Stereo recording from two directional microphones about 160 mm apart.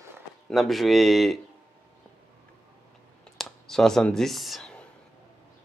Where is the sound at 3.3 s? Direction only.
Centre (ahead or behind).